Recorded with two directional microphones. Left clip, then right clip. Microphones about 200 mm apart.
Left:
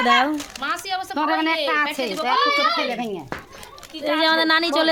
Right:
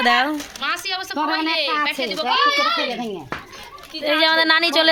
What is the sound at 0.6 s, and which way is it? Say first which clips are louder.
Speech: right 3 dB; 40° left (ahead or behind).